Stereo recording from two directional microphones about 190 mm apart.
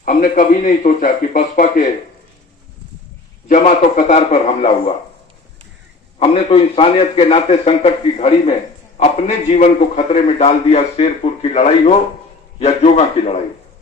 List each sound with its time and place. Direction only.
0.0 s a man's voice: 45° left (ahead or behind)
3.5 s a man's voice: 40° left (ahead or behind)
6.1 s a man's voice: 30° left (ahead or behind)